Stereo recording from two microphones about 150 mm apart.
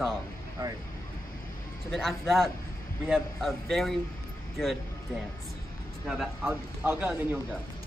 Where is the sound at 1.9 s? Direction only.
Centre (ahead or behind).